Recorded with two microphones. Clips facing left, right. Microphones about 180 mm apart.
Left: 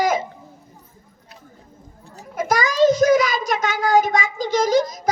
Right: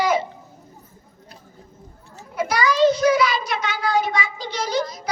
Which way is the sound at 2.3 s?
45° left (ahead or behind).